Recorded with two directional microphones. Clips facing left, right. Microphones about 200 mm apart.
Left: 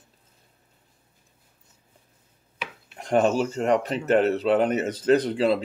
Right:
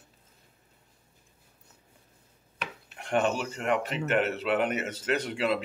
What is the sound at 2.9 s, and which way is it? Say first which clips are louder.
Speech: left 6 dB; 40° left (ahead or behind).